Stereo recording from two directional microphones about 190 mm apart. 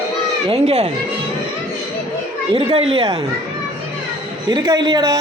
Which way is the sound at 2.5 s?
30° right (ahead or behind).